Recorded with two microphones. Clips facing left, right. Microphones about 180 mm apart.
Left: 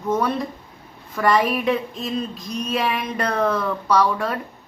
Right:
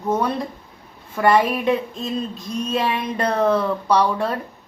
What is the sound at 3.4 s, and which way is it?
Speech, 25° right (ahead or behind).